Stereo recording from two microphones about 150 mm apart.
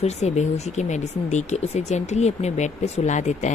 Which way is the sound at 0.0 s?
50° left (ahead or behind).